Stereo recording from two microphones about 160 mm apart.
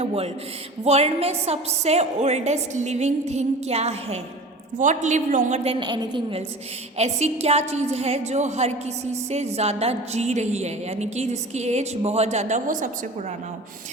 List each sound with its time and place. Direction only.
0.0 s a woman's voice: 40° right (ahead or behind)
6.9 s a woman's voice: 40° right (ahead or behind)